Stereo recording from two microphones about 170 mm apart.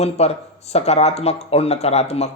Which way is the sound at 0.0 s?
40° left (ahead or behind).